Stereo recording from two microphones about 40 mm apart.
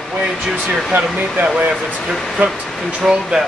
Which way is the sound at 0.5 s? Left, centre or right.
Centre.